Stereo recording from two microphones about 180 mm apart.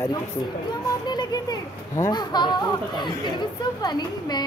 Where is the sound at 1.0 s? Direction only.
25° left (ahead or behind).